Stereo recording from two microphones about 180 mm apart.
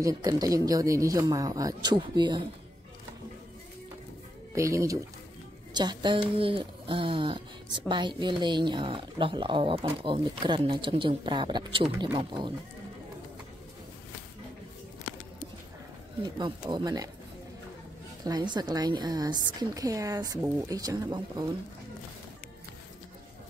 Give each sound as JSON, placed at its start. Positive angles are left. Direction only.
{"t": 0.0, "sound": "a woman's voice", "side_deg": -20}
{"t": 4.6, "sound": "a woman's voice", "side_deg": -15}
{"t": 16.3, "sound": "a woman's voice", "side_deg": -25}
{"t": 18.2, "sound": "a woman's voice", "side_deg": -25}